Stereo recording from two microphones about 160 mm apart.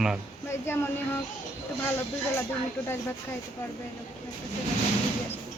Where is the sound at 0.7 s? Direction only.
15° left (ahead or behind).